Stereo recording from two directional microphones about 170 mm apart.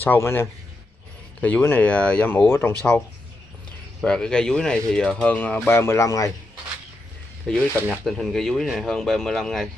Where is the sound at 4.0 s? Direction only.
5° left (ahead or behind).